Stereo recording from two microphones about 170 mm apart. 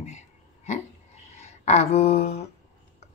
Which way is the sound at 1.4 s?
40° left (ahead or behind).